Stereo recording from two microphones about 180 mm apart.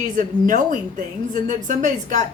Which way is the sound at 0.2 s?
45° right (ahead or behind).